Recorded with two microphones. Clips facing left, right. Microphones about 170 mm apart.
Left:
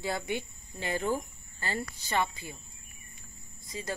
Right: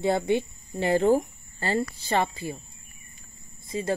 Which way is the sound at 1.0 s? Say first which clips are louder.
Right 10 dB; 50° right (ahead or behind).